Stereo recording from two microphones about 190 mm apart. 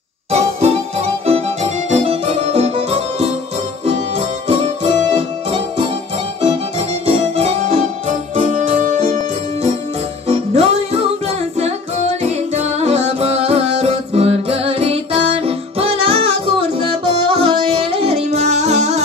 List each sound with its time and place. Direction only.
0.3 s music: 35° right (ahead or behind)
4.5 s music: 30° right (ahead or behind)
7.1 s music: 30° right (ahead or behind)
12.2 s music: 35° right (ahead or behind)